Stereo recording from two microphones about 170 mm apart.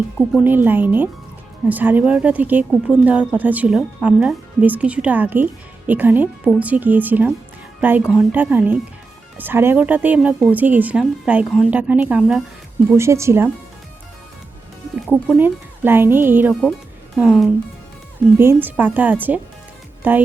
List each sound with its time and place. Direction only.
0.4 s a woman's voice: 10° right (ahead or behind)
15.0 s a woman's voice: 5° right (ahead or behind)